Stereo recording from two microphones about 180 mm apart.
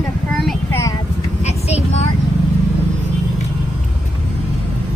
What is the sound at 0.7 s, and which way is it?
Vehicle, 15° left (ahead or behind).